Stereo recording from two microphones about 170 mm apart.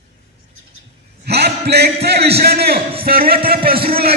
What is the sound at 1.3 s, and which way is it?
A man's voice, 75° right (ahead or behind).